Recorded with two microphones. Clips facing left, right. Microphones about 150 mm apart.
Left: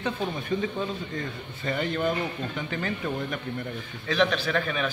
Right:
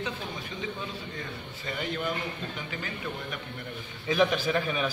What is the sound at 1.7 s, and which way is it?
Speech, 50° left (ahead or behind).